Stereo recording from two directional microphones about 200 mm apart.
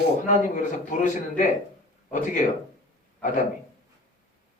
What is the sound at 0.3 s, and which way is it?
Speech, 40° left (ahead or behind).